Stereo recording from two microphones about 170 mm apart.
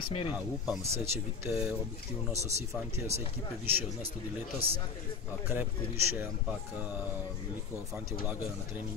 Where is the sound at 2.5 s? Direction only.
40° right (ahead or behind).